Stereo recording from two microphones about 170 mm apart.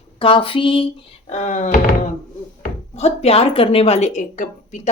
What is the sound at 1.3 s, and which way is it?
Speech, 45° left (ahead or behind).